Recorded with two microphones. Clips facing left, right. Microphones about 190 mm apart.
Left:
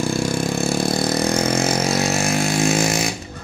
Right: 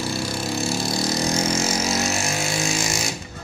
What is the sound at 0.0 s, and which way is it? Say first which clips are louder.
Vehicle: left 6 dB; 50° left (ahead or behind).